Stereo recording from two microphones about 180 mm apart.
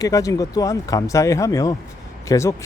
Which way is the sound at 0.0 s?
20° left (ahead or behind).